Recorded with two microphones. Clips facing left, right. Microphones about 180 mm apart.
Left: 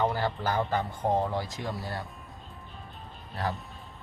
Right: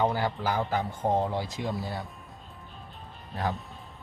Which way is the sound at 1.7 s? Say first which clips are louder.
Right 2 dB; centre (ahead or behind).